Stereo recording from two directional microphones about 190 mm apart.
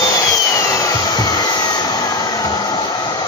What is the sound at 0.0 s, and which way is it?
Vacuum cleaner, 15° left (ahead or behind).